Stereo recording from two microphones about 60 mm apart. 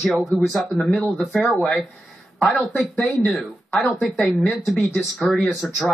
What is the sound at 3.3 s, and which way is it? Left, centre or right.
Speech, centre.